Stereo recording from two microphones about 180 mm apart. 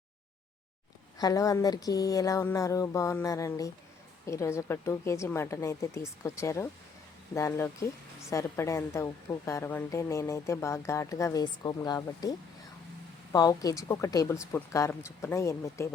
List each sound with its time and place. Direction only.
1.2 s a woman's voice: 20° left (ahead or behind)
13.3 s a woman's voice: 20° left (ahead or behind)